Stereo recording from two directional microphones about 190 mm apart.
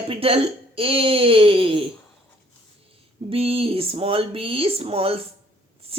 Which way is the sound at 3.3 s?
30° right (ahead or behind).